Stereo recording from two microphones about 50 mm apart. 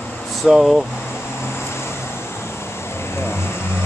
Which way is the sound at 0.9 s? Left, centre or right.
Left.